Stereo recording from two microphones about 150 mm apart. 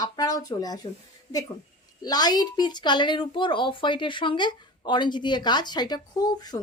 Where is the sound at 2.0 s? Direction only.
25° left (ahead or behind).